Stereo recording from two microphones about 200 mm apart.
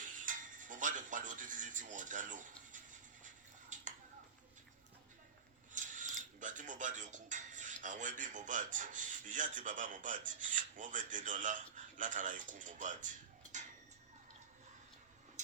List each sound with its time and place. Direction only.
0.0 s music: 40° right (ahead or behind)
5.7 s speech: 40° right (ahead or behind)